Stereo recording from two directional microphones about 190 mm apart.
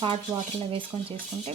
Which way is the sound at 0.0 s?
30° right (ahead or behind).